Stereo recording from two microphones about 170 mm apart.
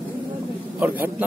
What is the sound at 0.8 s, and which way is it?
Speech, 10° right (ahead or behind).